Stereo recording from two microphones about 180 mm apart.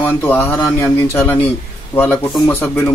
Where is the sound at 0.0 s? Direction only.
10° left (ahead or behind).